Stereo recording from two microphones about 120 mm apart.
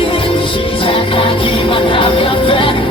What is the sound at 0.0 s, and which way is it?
Music, 50° left (ahead or behind).